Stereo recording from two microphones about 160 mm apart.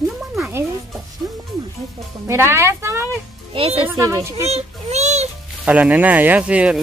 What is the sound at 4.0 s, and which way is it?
Speech, 20° right (ahead or behind).